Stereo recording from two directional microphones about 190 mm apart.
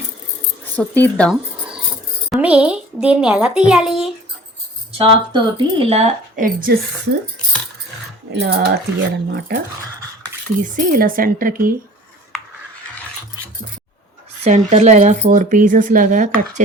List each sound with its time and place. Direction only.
0.8 s speech: 10° left (ahead or behind)
2.3 s a child's voice: 5° right (ahead or behind)
4.9 s speech: 30° right (ahead or behind); by 6.7 s 45° right (ahead or behind)
8.3 s speech: 60° right (ahead or behind)
10.6 s speech: 45° right (ahead or behind)
14.4 s speech: 35° right (ahead or behind)